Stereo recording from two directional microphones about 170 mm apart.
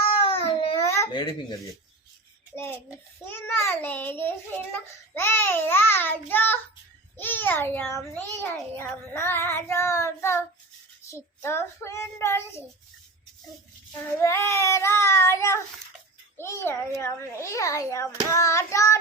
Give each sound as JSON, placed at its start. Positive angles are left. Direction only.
{"t": 0.3, "sound": "babbling", "side_deg": 35}
{"t": 0.8, "sound": "speech", "side_deg": 15}
{"t": 3.2, "sound": "a child's voice", "side_deg": 15}
{"t": 14.2, "sound": "a child's voice", "side_deg": 15}